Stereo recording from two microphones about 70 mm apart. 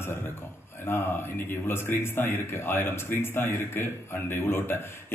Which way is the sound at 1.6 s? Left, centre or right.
Left.